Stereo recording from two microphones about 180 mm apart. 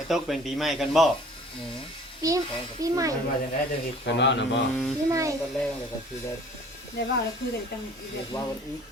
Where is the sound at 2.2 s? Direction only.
20° right (ahead or behind).